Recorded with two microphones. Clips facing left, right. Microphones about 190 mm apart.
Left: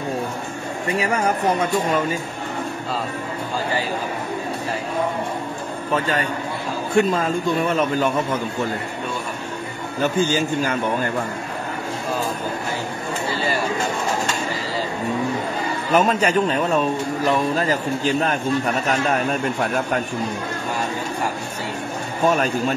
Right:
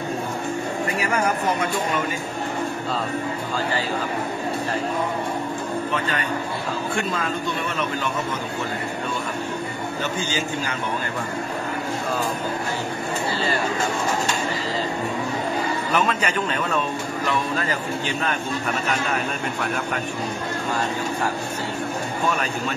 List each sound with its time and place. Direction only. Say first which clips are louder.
7.0 s a man's voice: left 12 dB; 40° left (ahead or behind)
10.2 s a man's voice: left 6 dB; 50° left (ahead or behind)
15.9 s a man's voice: left 8 dB; 40° left (ahead or behind)
22.3 s a man's voice: left 5 dB; 40° left (ahead or behind)